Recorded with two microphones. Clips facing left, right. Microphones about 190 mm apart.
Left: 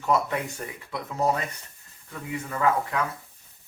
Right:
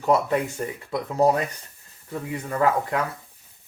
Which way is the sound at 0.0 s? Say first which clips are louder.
Right 4 dB; 30° right (ahead or behind).